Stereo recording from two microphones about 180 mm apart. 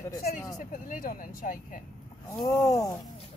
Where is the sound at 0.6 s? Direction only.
45° left (ahead or behind).